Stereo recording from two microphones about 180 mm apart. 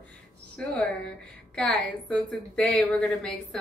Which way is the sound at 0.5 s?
5° left (ahead or behind).